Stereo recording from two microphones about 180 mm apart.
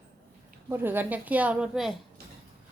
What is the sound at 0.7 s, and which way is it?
Speech, 10° right (ahead or behind).